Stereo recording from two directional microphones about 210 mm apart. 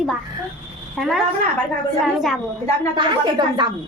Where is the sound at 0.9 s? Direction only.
Centre (ahead or behind).